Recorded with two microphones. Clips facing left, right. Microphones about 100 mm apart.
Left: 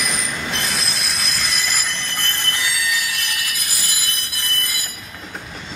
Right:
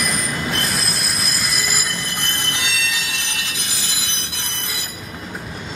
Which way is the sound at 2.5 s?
20° right (ahead or behind).